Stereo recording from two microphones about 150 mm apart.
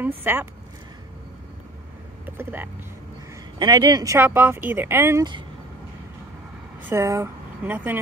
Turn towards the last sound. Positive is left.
turn(degrees=-15)  # may be behind; listen again after turning